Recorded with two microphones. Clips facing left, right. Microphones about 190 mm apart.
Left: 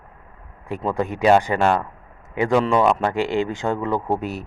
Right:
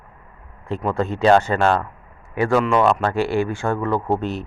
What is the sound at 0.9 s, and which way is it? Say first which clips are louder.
Speech: right 1 dB; 15° left (ahead or behind).